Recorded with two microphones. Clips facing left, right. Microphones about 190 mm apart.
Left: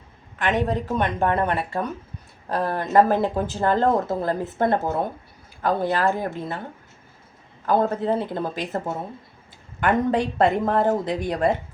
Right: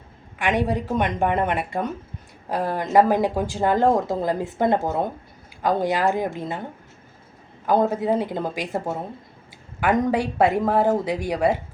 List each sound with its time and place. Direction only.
0.3 s speech: 10° right (ahead or behind)
7.7 s speech: 10° right (ahead or behind)
9.8 s speech: 10° right (ahead or behind)